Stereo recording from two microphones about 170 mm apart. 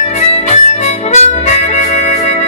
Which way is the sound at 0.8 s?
40° left (ahead or behind).